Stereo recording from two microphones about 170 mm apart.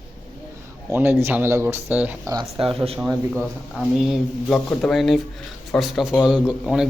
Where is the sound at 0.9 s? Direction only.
15° right (ahead or behind).